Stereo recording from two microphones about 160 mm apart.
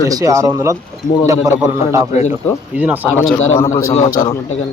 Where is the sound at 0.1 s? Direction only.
20° right (ahead or behind).